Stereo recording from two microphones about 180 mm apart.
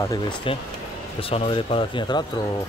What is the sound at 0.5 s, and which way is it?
Speech, 30° left (ahead or behind).